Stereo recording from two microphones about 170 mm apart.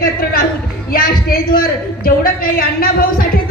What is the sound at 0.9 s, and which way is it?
Speech, 60° left (ahead or behind).